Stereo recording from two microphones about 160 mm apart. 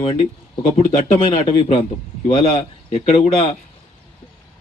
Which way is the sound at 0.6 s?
50° left (ahead or behind).